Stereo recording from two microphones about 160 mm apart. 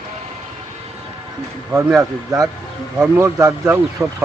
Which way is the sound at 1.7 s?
15° right (ahead or behind).